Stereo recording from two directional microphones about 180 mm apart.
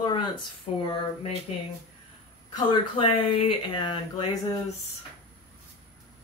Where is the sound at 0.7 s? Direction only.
35° left (ahead or behind).